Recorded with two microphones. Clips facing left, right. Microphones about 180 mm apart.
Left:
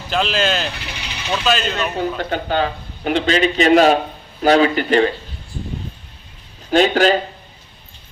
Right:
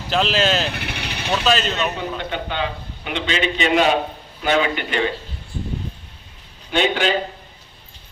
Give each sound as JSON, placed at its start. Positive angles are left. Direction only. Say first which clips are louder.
{"t": 0.1, "sound": "speech", "louder": "even", "side_deg": 0}
{"t": 0.7, "sound": "vehicle", "louder": "right 3 dB", "side_deg": -60}
{"t": 1.3, "sound": "speech", "louder": "even", "side_deg": 0}
{"t": 2.0, "sound": "a man's voice", "louder": "left 5 dB", "side_deg": 40}
{"t": 6.7, "sound": "a man's voice", "louder": "left 6 dB", "side_deg": 40}